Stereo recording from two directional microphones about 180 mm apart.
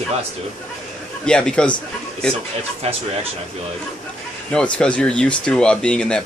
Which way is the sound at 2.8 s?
35° right (ahead or behind).